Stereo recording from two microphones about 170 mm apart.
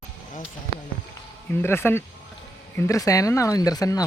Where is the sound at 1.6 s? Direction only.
15° left (ahead or behind).